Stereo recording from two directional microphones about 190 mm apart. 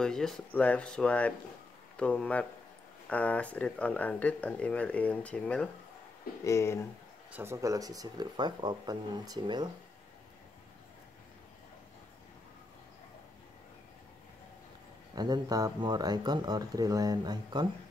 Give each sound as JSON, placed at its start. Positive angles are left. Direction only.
{"t": 0.0, "sound": "speech", "side_deg": 0}
{"t": 7.3, "sound": "speech", "side_deg": -15}
{"t": 15.1, "sound": "speech", "side_deg": -20}